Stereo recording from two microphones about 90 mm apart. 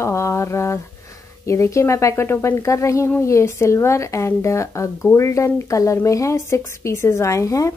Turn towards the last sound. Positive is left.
turn(degrees=35)  # may be behind; listen again after turning